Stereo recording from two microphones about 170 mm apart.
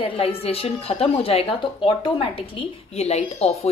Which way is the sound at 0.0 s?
35° left (ahead or behind).